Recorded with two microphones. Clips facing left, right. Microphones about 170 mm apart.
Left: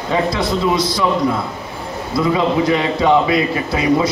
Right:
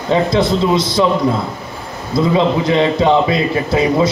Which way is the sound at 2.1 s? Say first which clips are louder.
Right 2 dB; 25° right (ahead or behind).